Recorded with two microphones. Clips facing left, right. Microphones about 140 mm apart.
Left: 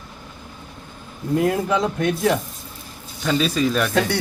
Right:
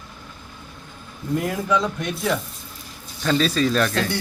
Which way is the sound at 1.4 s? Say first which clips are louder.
Left 3 dB; 25° left (ahead or behind).